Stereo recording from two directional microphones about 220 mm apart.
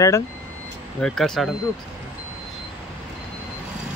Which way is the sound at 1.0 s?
5° left (ahead or behind).